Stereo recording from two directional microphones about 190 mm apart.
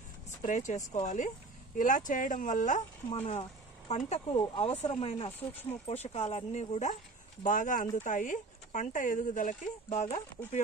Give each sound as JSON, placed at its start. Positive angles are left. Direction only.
{"t": 0.4, "sound": "speech", "side_deg": 40}
{"t": 4.4, "sound": "speech", "side_deg": 25}